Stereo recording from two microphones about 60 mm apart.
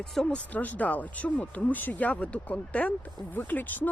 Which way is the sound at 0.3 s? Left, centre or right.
Left.